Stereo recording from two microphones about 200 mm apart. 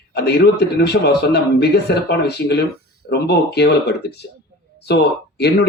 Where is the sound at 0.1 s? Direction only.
55° left (ahead or behind).